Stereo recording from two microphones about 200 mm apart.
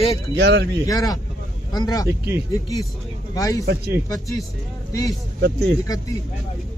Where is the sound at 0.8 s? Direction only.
20° left (ahead or behind).